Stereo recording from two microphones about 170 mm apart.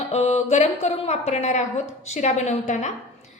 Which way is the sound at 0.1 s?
40° left (ahead or behind).